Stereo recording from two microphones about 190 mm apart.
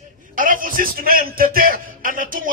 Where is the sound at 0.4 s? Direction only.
45° right (ahead or behind).